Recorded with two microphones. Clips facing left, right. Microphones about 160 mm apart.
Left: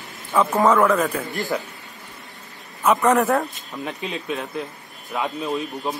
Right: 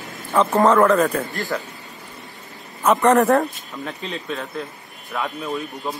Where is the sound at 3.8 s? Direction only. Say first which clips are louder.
Left 1 dB; 15° left (ahead or behind).